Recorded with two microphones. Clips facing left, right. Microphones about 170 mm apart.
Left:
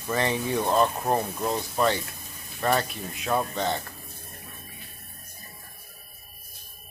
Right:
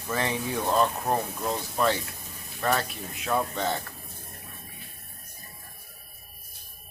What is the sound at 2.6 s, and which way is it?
Speech, 5° left (ahead or behind).